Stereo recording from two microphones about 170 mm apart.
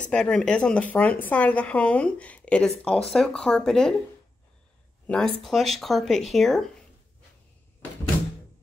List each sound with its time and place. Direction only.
0.0 s speech: 5° left (ahead or behind)
5.0 s speech: 5° left (ahead or behind)